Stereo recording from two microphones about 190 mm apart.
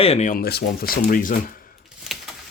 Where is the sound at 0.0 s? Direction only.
35° left (ahead or behind).